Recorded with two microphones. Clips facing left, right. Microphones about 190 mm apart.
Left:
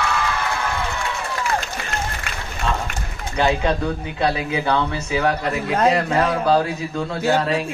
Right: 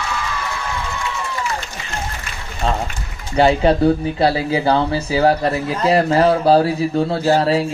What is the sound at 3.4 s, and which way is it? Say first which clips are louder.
Speech: right 6 dB; 30° right (ahead or behind).